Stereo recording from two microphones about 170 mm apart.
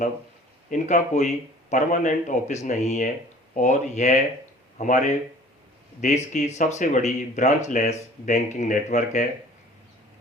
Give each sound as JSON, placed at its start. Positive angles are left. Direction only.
{"t": 0.7, "sound": "speech", "side_deg": 45}